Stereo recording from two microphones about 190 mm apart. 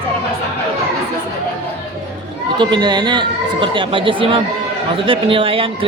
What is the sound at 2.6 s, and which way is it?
Speech, 25° right (ahead or behind).